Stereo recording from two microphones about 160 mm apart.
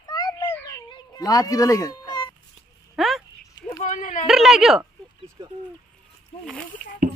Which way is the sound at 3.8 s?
50° left (ahead or behind).